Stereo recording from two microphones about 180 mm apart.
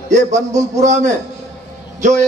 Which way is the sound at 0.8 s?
40° right (ahead or behind).